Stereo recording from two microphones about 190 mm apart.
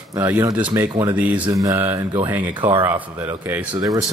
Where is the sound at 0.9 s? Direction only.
25° right (ahead or behind).